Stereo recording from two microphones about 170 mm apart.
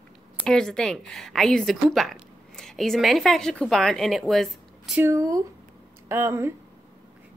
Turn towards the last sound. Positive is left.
turn(degrees=-15)  # may be behind; listen again after turning